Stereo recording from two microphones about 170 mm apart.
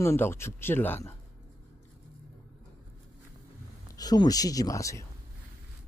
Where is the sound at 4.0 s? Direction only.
25° left (ahead or behind).